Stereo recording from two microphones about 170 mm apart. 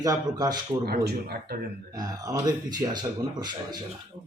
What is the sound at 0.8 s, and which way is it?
Speech, 65° right (ahead or behind).